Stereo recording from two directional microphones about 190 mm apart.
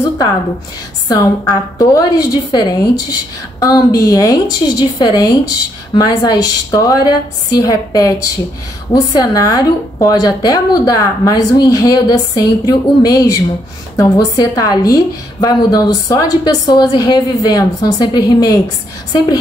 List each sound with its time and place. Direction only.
1.0 s a woman's voice: 20° left (ahead or behind)